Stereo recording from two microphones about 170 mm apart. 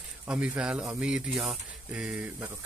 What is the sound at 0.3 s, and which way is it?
Speech, 5° right (ahead or behind).